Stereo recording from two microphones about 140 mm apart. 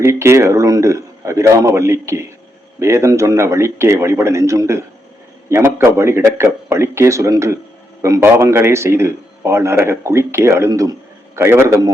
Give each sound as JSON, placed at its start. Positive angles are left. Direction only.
{"t": 0.0, "sound": "a man's voice", "side_deg": -20}